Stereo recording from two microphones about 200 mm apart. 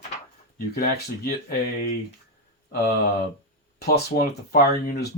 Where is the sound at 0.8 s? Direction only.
45° left (ahead or behind).